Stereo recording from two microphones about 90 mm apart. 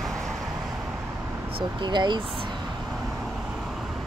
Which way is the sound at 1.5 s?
55° right (ahead or behind).